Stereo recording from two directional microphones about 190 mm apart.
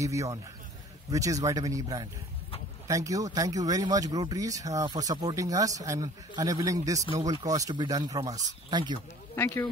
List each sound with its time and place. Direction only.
0.0 s speech: 15° right (ahead or behind)
9.3 s speech: 15° left (ahead or behind)